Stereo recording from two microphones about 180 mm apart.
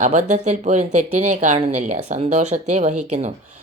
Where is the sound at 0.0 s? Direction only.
40° right (ahead or behind).